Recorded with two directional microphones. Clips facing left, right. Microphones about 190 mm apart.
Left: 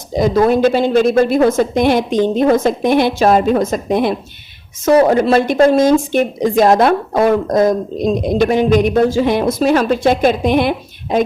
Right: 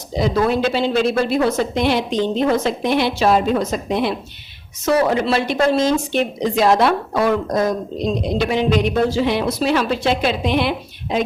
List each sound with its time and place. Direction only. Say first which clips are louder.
0.2 s speech: left 6 dB; 45° left (ahead or behind)